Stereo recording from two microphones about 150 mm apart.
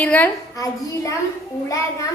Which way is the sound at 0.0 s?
10° left (ahead or behind).